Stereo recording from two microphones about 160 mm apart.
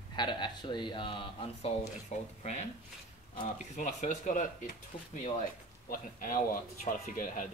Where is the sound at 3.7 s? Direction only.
50° left (ahead or behind).